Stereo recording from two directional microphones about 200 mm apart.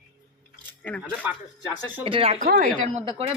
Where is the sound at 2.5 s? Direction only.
50° right (ahead or behind).